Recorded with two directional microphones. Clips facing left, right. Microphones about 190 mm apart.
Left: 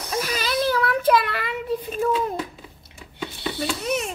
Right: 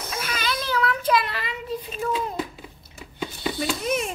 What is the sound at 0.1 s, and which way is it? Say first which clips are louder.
Child singing: left 5 dB; 40° left (ahead or behind).